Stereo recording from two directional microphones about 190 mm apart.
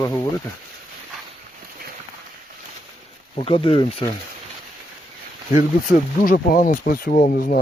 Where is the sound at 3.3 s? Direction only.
30° left (ahead or behind).